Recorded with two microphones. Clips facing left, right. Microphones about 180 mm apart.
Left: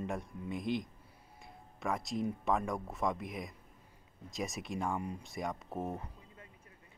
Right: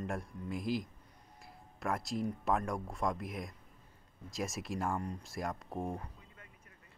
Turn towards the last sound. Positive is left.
turn(degrees=5)  # may be behind; listen again after turning